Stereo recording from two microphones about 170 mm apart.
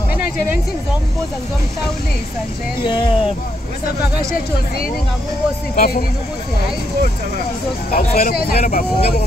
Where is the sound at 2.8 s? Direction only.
25° left (ahead or behind).